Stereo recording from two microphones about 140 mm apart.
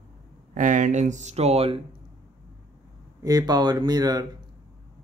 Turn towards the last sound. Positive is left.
turn(degrees=-30)  # may be behind; listen again after turning